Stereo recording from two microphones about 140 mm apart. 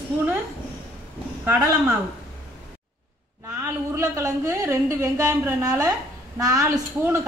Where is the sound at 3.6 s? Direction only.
20° right (ahead or behind).